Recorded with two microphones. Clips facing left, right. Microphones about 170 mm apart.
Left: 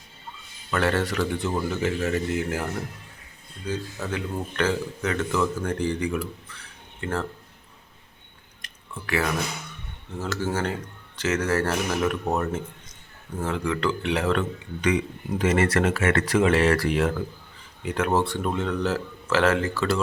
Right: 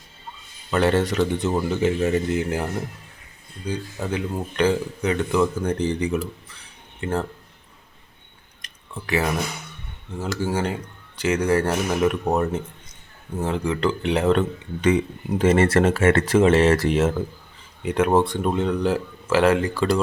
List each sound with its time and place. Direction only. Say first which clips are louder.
0.7 s speech: right 4 dB; 20° right (ahead or behind)
3.7 s speech: right 3 dB; 20° right (ahead or behind)
8.6 s drip: right 2 dB; 20° right (ahead or behind)
10.2 s speech: right 3 dB; 10° right (ahead or behind)